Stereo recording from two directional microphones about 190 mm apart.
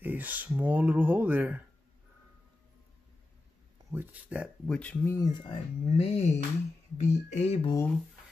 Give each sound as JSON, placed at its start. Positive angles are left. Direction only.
{"t": 0.0, "sound": "speech", "side_deg": -10}
{"t": 3.9, "sound": "speech", "side_deg": -10}
{"t": 4.6, "sound": "speech", "side_deg": 5}
{"t": 7.0, "sound": "a sound", "side_deg": 35}